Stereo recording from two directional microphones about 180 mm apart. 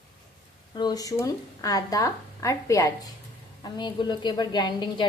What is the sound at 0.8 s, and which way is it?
Speech, 20° left (ahead or behind).